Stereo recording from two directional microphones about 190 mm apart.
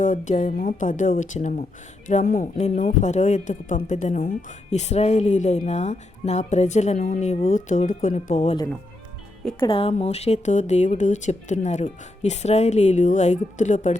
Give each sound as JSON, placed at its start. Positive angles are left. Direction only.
{"t": 0.0, "sound": "speech", "side_deg": 40}
{"t": 9.6, "sound": "speech", "side_deg": 25}